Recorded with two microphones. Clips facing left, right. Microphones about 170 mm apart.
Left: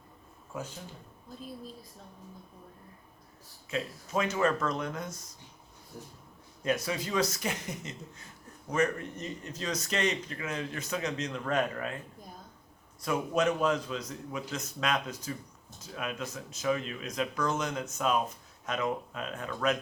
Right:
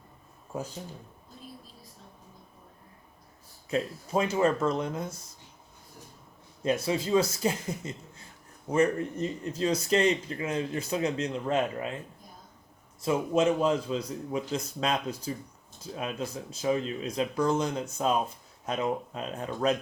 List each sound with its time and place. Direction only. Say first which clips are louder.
3.7 s speech: right 5 dB; 30° right (ahead or behind)
6.7 s speech: right 5 dB; 30° right (ahead or behind)
13.0 s speech: right 4 dB; 25° right (ahead or behind)